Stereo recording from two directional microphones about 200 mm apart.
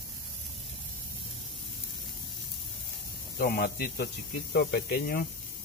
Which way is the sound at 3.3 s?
50° left (ahead or behind).